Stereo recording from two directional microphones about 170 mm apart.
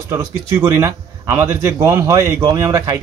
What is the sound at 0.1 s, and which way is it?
Speech, 15° right (ahead or behind).